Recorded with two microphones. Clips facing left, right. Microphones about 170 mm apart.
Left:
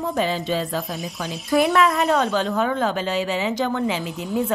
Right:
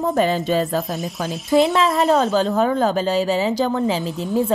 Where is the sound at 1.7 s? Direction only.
25° right (ahead or behind).